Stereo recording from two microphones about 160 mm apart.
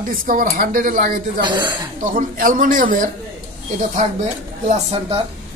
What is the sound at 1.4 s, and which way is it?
Speech, 30° right (ahead or behind).